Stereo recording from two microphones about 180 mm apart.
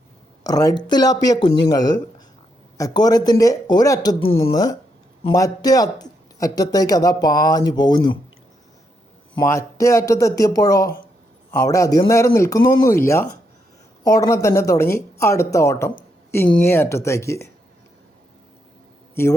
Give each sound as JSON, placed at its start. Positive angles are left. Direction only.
{"t": 0.4, "sound": "speech", "side_deg": 20}
{"t": 9.5, "sound": "speech", "side_deg": 15}